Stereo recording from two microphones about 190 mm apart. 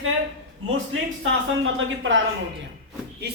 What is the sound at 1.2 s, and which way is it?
Speech, 90° right.